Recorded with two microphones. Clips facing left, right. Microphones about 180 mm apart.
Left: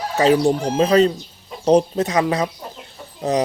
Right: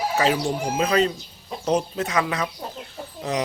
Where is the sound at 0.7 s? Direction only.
35° left (ahead or behind).